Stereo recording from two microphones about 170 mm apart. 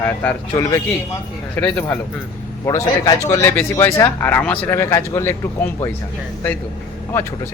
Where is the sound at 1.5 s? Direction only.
10° left (ahead or behind).